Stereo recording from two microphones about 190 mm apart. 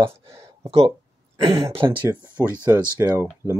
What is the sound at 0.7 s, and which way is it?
Speech, 30° right (ahead or behind).